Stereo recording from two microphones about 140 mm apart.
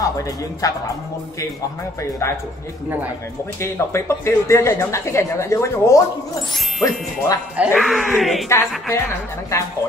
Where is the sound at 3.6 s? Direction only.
20° left (ahead or behind).